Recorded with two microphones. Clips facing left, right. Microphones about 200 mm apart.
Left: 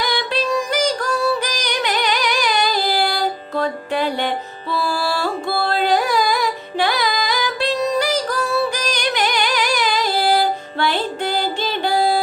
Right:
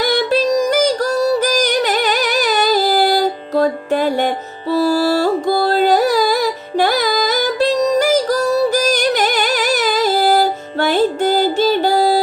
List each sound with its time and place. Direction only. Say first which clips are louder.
0.0 s music: right 7 dB; 45° right (ahead or behind)